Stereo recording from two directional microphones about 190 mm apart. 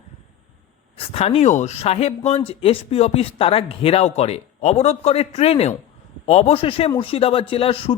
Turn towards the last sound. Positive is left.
turn(degrees=30)  # may be behind; listen again after turning